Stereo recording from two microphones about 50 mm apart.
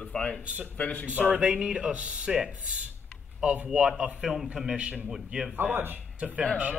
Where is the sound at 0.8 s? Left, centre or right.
Left.